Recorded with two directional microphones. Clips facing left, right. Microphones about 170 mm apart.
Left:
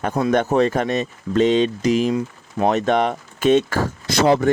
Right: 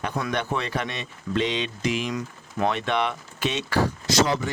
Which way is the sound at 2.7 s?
40° left (ahead or behind).